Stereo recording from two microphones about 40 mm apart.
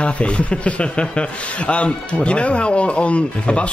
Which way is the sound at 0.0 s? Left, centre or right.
Left.